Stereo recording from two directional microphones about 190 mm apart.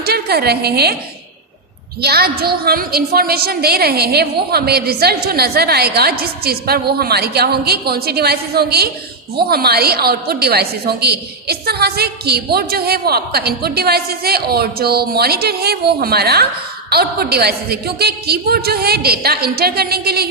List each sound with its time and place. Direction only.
0.0 s a woman's voice: 55° right (ahead or behind)
2.0 s a woman's voice: 55° right (ahead or behind)